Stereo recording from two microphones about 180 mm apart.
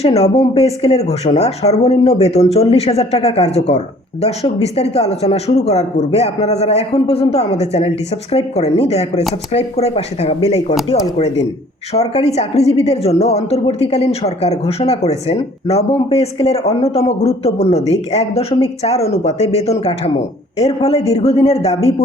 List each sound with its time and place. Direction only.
0.0 s a woman's voice: 35° left (ahead or behind)
11.9 s a woman's voice: 35° left (ahead or behind)